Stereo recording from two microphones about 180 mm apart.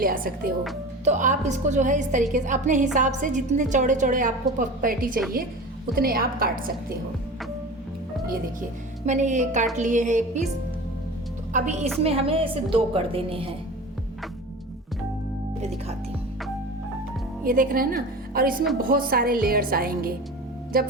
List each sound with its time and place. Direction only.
0.0 s a woman's voice: 50° right (ahead or behind)
9.0 s a woman's voice: 40° right (ahead or behind)
11.5 s a woman's voice: 40° right (ahead or behind)
12.0 s a woman's voice: 30° right (ahead or behind)
17.4 s a woman's voice: 50° right (ahead or behind)